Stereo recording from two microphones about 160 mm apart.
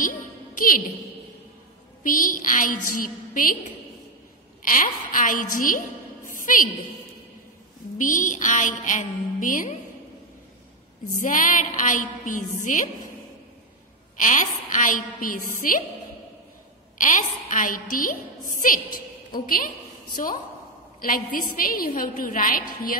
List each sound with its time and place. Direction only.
0.6 s a woman's voice: 60° left (ahead or behind)
2.0 s a woman's voice: 60° left (ahead or behind)
4.6 s a woman's voice: 60° left (ahead or behind)
6.2 s a sound: 55° left (ahead or behind)
8.0 s a woman's voice: 55° left (ahead or behind)
11.1 s a woman's voice: 55° left (ahead or behind)
14.2 s a woman's voice: 55° left (ahead or behind)
17.0 s a woman's voice: 55° left (ahead or behind)
21.0 s a woman's voice: 60° left (ahead or behind)